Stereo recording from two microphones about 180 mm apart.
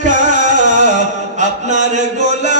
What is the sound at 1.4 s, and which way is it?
Chant, 40° right (ahead or behind).